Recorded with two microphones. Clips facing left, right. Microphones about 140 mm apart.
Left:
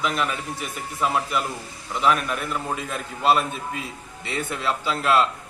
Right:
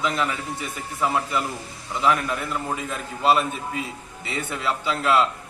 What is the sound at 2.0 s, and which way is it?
A man's voice, 20° right (ahead or behind).